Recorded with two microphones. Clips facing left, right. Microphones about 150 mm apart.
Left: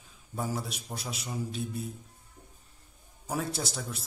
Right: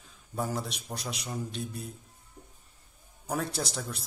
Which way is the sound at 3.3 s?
5° left (ahead or behind).